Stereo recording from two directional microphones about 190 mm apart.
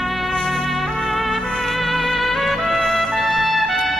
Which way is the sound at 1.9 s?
Centre (ahead or behind).